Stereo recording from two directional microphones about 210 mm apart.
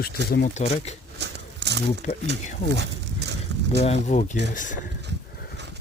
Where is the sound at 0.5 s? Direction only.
30° left (ahead or behind).